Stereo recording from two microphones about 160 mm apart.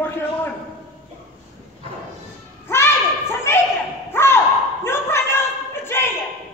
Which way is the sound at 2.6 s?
15° left (ahead or behind).